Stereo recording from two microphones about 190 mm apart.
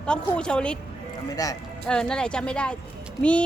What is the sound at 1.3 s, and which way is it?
Speech, 20° left (ahead or behind).